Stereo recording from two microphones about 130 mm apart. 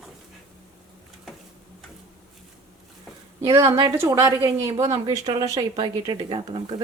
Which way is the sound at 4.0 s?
20° right (ahead or behind).